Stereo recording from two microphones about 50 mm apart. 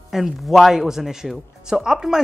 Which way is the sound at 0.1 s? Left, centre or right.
Centre.